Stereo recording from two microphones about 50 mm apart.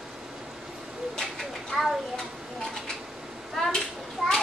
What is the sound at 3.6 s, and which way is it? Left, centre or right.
Children playing, centre.